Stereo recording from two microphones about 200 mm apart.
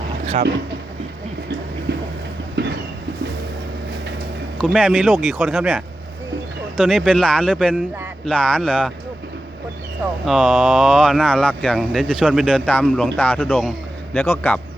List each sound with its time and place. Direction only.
2.6 s a sound: 55° right (ahead or behind)
4.6 s speech: 5° right (ahead or behind)
10.2 s a man's voice: centre (ahead or behind)